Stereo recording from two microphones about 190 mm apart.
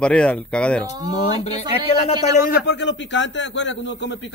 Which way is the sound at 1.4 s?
35° left (ahead or behind).